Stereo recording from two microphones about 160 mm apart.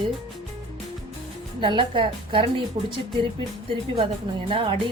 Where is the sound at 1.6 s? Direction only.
30° right (ahead or behind).